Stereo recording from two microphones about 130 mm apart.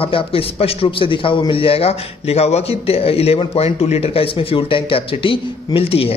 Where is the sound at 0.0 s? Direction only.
45° left (ahead or behind).